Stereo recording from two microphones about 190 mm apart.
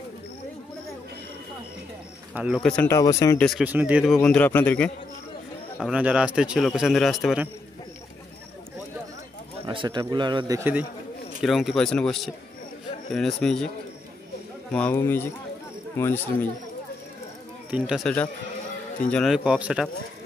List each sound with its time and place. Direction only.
2.3 s a man's voice: 5° right (ahead or behind)
2.6 s speech: 10° left (ahead or behind)
3.3 s a man's voice: centre (ahead or behind)
4.2 s speech: 10° left (ahead or behind)
5.8 s a man's voice: 5° right (ahead or behind)
9.7 s a man's voice: 25° right (ahead or behind)
10.6 s a man's voice: 10° right (ahead or behind)
14.7 s speech: 10° left (ahead or behind)
17.6 s a man's voice: 5° right (ahead or behind)